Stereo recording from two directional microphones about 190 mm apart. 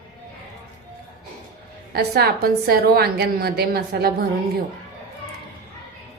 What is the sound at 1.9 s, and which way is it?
A woman's voice, 55° right (ahead or behind).